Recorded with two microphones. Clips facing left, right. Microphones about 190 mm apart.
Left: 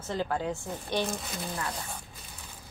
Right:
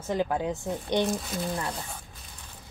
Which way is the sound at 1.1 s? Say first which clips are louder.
Right 5 dB; centre (ahead or behind).